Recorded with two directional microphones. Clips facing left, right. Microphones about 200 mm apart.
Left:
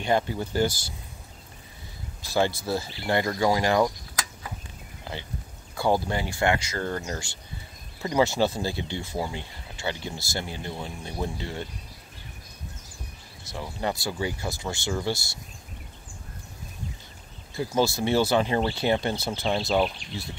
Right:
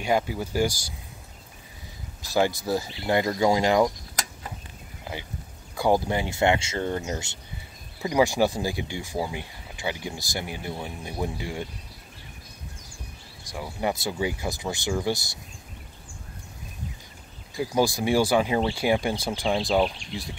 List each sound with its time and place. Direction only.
0.0 s speech: 10° right (ahead or behind)
2.3 s speech: 15° right (ahead or behind)
5.1 s horse: 15° right (ahead or behind)
5.8 s speech: 15° right (ahead or behind)
13.4 s speech: 15° right (ahead or behind)
17.6 s speech: 15° right (ahead or behind)